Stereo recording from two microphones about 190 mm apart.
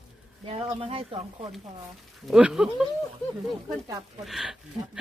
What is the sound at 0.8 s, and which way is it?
Speech, 30° right (ahead or behind).